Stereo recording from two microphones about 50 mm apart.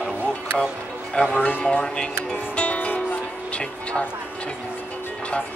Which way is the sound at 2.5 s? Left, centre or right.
Left.